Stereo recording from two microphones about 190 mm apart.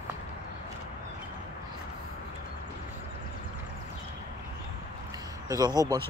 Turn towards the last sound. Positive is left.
turn(degrees=-20)  # may be behind; listen again after turning